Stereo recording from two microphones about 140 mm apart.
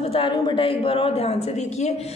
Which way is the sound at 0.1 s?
40° left (ahead or behind).